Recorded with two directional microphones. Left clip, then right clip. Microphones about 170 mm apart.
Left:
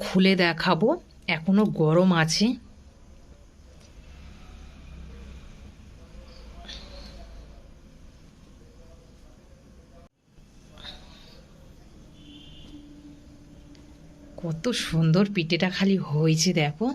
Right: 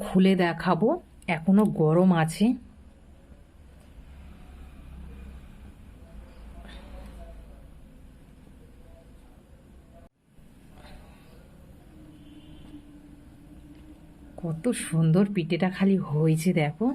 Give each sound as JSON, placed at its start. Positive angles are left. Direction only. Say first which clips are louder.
{"t": 0.0, "sound": "speech", "louder": "left 2 dB", "side_deg": 0}
{"t": 1.2, "sound": "speech", "louder": "right 1 dB", "side_deg": -10}
{"t": 14.4, "sound": "speech", "louder": "left 2 dB", "side_deg": 0}